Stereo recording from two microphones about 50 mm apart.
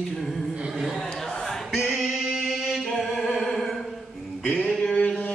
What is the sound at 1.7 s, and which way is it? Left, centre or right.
Mantra, centre.